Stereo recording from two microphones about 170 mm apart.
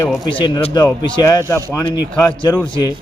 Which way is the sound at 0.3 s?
25° left (ahead or behind).